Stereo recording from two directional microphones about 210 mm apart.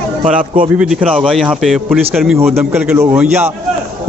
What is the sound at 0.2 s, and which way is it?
Speech, 40° right (ahead or behind).